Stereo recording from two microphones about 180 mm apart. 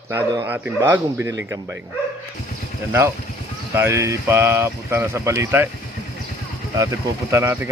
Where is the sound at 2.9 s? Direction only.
15° right (ahead or behind).